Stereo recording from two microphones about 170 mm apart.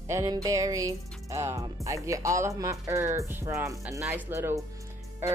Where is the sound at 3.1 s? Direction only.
15° right (ahead or behind).